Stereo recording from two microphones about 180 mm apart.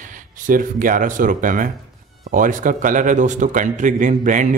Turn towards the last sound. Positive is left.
turn(degrees=-45)  # may be behind; listen again after turning